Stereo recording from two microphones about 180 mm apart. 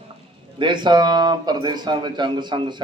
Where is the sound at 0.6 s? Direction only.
25° right (ahead or behind).